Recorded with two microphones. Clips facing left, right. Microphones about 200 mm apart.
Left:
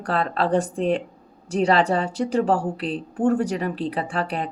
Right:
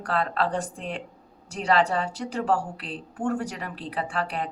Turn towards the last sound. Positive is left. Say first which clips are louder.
# left 3 dB
turn(degrees=25)  # may be behind; listen again after turning